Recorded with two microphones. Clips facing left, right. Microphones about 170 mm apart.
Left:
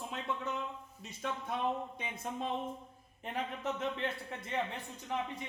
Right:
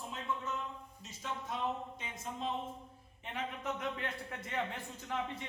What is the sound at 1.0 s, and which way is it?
Speech, 60° left (ahead or behind).